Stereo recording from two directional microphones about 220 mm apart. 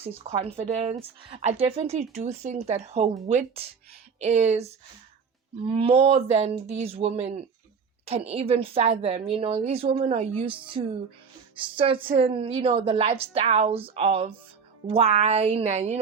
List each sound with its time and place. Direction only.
0.3 s a woman's voice: 30° right (ahead or behind)